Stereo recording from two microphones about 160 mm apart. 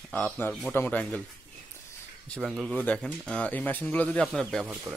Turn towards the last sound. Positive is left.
turn(degrees=0)  # may be behind; listen again after turning